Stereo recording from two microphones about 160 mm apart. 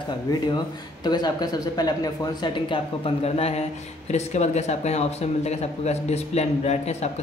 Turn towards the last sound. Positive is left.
turn(degrees=45)  # may be behind; listen again after turning